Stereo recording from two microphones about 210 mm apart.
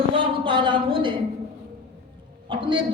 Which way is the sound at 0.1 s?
25° right (ahead or behind).